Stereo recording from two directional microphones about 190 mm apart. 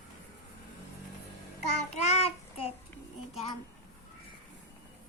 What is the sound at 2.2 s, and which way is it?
Child singing, 30° left (ahead or behind).